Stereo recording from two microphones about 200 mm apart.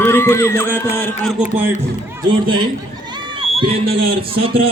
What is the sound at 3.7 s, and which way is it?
Speech, 50° right (ahead or behind).